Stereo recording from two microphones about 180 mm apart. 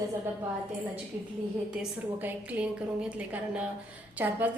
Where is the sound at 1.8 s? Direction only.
10° right (ahead or behind).